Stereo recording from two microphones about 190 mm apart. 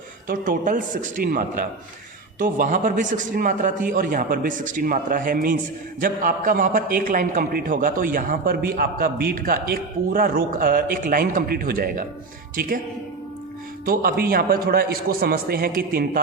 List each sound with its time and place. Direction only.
0.3 s a man's voice: 45° right (ahead or behind)
13.8 s a man's voice: 50° right (ahead or behind)